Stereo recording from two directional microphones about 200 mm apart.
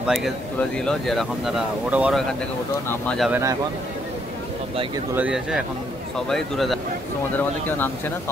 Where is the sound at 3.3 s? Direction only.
15° right (ahead or behind).